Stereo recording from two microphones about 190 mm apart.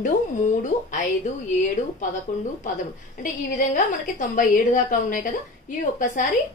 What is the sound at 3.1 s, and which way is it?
A woman's voice, 45° left (ahead or behind).